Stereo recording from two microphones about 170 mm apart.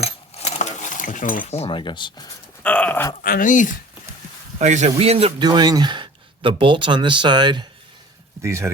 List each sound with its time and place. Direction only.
0.0 s cutlery: 40° left (ahead or behind)
1.5 s speech: 35° left (ahead or behind)
2.6 s a sound: 10° left (ahead or behind)
3.2 s speech: 55° left (ahead or behind)
4.5 s speech: 45° right (ahead or behind); by 7.7 s 25° right (ahead or behind)
8.4 s speech: 15° right (ahead or behind)